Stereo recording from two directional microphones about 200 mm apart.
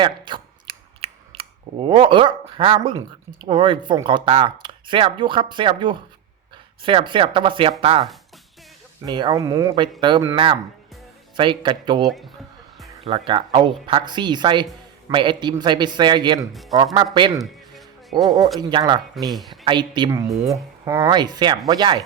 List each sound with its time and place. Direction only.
0.0 s a man's voice: 25° right (ahead or behind)
9.0 s a man's voice: 20° right (ahead or behind)
16.5 s speech: centre (ahead or behind)
16.7 s a man's voice: 20° right (ahead or behind)
18.7 s a man's voice: 20° right (ahead or behind)
19.3 s speech: centre (ahead or behind)
19.6 s a man's voice: 25° right (ahead or behind)